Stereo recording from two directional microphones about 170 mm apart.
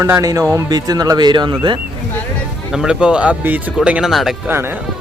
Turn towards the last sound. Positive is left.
turn(degrees=-15)  # may be behind; listen again after turning